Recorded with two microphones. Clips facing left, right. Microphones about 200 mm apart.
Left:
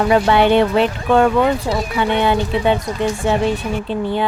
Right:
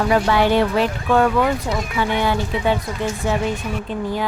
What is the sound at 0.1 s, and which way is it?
Speech, 25° left (ahead or behind).